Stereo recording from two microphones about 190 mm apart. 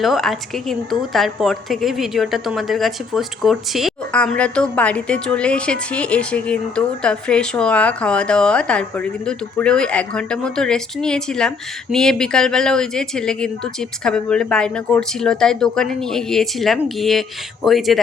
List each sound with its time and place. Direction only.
0.0 s a woman's voice: centre (ahead or behind)